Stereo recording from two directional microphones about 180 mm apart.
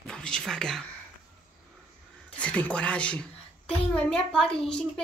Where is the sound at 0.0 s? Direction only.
5° left (ahead or behind).